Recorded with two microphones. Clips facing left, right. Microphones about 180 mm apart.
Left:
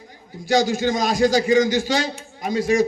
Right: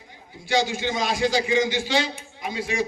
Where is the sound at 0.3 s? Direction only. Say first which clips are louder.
Left 5 dB; 40° left (ahead or behind).